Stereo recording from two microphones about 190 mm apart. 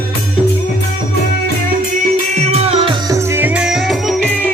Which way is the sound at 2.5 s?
30° right (ahead or behind).